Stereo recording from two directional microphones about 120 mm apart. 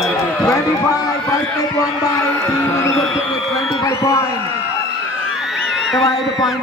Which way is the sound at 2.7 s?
25° left (ahead or behind).